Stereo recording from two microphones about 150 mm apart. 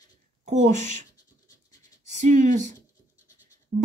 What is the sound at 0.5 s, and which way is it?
Speech, 50° right (ahead or behind).